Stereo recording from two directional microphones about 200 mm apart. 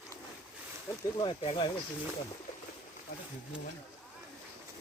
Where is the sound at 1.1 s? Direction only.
25° left (ahead or behind).